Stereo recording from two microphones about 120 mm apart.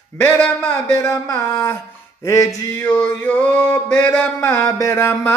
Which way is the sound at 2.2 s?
25° left (ahead or behind).